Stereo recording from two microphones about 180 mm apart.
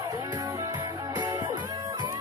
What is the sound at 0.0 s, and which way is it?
Music, 20° right (ahead or behind).